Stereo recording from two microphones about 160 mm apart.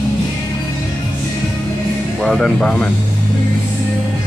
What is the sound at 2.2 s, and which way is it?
Speech, centre (ahead or behind).